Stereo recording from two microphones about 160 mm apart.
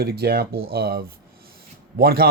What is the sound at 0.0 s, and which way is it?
Speech, 80° right.